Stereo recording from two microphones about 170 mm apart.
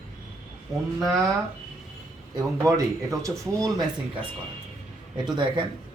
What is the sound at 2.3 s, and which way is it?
Speech, 20° right (ahead or behind).